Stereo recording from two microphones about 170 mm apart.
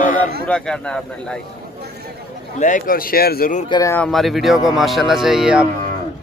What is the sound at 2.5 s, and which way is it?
Speech, 50° left (ahead or behind).